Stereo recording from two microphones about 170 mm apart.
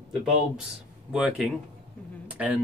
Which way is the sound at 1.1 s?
5° right (ahead or behind).